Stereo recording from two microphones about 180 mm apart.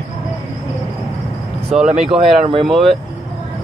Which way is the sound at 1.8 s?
35° right (ahead or behind).